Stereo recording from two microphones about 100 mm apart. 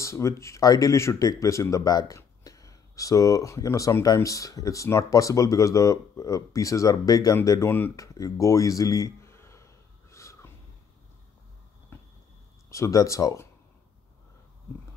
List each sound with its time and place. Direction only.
0.0 s speech: 30° left (ahead or behind)
10.1 s snort: 30° left (ahead or behind)
11.9 s a sound: 20° left (ahead or behind)
12.6 s speech: 30° left (ahead or behind)